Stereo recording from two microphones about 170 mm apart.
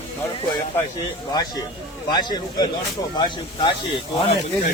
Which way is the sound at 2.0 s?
25° left (ahead or behind).